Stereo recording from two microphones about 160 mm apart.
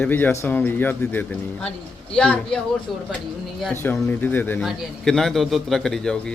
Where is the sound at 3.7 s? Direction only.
15° left (ahead or behind).